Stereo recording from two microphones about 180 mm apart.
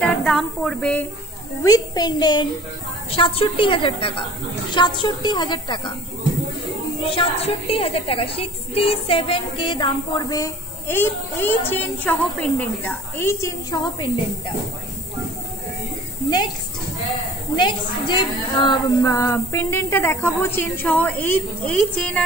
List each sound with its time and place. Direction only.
0.0 s a woman's voice: 5° left (ahead or behind)
1.6 s a woman's voice: 20° left (ahead or behind)
7.1 s a woman's voice: 30° left (ahead or behind)
17.6 s a woman's voice: 25° left (ahead or behind); by 22.2 s 5° left (ahead or behind)